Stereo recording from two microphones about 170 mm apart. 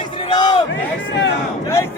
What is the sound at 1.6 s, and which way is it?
Speech, 15° left (ahead or behind).